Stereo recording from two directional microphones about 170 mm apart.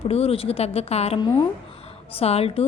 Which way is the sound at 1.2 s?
25° left (ahead or behind).